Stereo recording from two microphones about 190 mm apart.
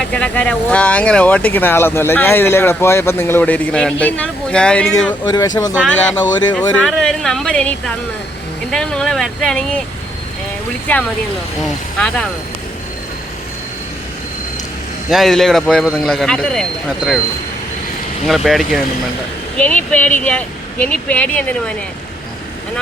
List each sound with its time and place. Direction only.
0.0 s speech: 5° left (ahead or behind)
5.2 s speech: 20° left (ahead or behind)
6.1 s speech: 5° left (ahead or behind)
10.9 s speech: 10° left (ahead or behind)
15.1 s speech: centre (ahead or behind)
18.3 s speech: centre (ahead or behind)